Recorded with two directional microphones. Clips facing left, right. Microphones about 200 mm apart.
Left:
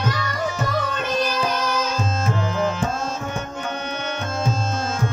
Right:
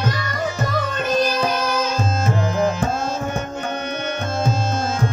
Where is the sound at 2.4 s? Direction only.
40° right (ahead or behind).